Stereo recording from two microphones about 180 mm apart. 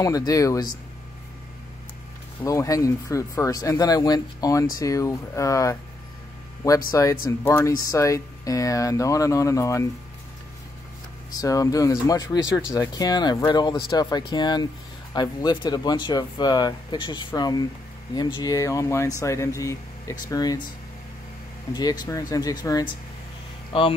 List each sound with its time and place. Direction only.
0.0 s speech: 20° left (ahead or behind)
2.4 s speech: 15° left (ahead or behind)
6.9 s speech: 20° left (ahead or behind)
11.3 s speech: 20° left (ahead or behind)
21.7 s speech: 25° left (ahead or behind)